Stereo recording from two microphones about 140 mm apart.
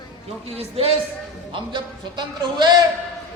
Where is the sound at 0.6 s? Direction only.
45° right (ahead or behind).